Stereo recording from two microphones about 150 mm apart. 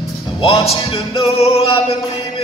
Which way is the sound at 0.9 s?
40° left (ahead or behind).